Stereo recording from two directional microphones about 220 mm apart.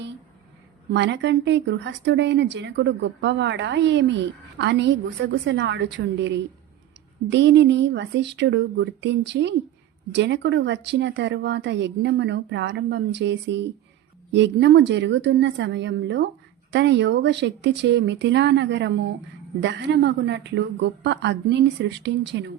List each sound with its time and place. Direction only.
0.9 s speech: 50° right (ahead or behind)